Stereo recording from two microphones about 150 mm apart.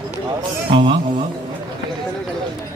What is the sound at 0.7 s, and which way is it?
Speech, 35° right (ahead or behind).